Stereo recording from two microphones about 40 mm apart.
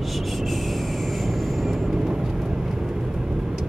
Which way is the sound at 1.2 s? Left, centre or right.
Centre.